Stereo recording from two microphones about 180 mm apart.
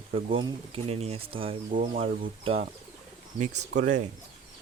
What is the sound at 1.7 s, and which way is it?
Speech, 45° right (ahead or behind).